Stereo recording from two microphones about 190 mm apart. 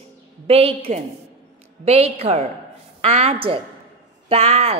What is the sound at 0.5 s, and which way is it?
A woman's voice, 30° right (ahead or behind).